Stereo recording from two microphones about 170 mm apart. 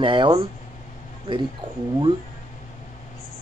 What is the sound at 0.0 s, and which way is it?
Speech, 30° right (ahead or behind).